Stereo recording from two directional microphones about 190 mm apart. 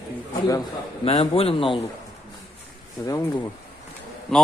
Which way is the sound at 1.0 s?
30° left (ahead or behind).